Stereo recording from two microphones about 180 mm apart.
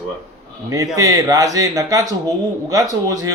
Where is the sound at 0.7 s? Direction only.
20° right (ahead or behind).